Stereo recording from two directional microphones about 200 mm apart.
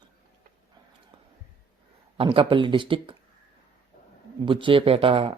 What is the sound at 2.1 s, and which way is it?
Speech, 25° right (ahead or behind).